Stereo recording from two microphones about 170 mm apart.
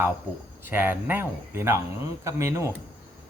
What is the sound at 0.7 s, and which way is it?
Speech, 10° right (ahead or behind).